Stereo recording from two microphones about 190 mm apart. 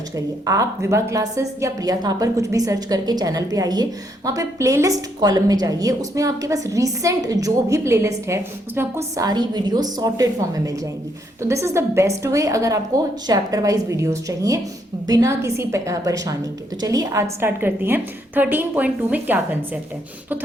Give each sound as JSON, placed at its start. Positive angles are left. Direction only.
{"t": 0.4, "sound": "a woman's voice", "side_deg": -15}